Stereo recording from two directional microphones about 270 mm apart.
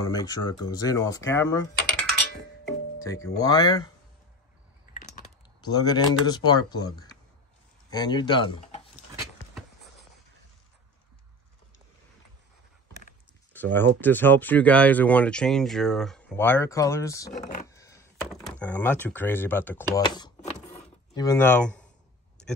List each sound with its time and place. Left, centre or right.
0.0 s speech: centre
4.9 s a sound: left
5.7 s speech: centre
13.5 s speech: centre
17.6 s a sound: centre
18.3 s speech: centre